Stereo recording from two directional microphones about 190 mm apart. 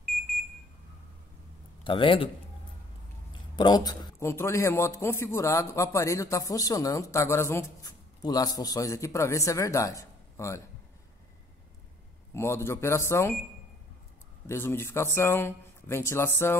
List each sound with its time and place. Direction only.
1.9 s a man's voice: 25° left (ahead or behind)
3.5 s a man's voice: 20° left (ahead or behind)
12.4 s a man's voice: 15° left (ahead or behind)
14.5 s a man's voice: 15° left (ahead or behind)